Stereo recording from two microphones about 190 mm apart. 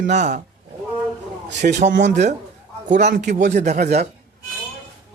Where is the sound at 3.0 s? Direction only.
55° right (ahead or behind); by 4.0 s 40° right (ahead or behind).